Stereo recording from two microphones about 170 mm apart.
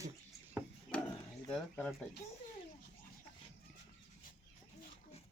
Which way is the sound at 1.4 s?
10° left (ahead or behind).